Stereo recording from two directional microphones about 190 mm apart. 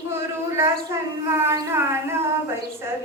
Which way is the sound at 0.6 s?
15° right (ahead or behind).